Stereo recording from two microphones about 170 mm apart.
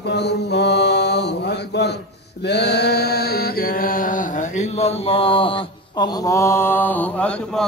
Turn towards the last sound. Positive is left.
turn(degrees=5)  # may be behind; listen again after turning